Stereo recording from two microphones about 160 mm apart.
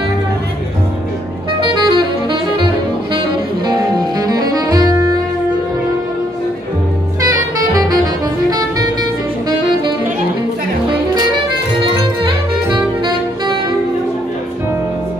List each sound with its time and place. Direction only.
1.5 s saxophone: 30° right (ahead or behind)
7.2 s saxophone: 20° right (ahead or behind)
8.5 s music: 25° right (ahead or behind)